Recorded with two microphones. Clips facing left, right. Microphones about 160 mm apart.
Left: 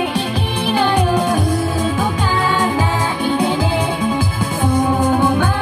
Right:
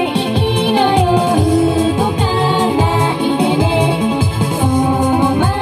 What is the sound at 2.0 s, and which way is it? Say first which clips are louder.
Music: right 3 dB; 25° right (ahead or behind).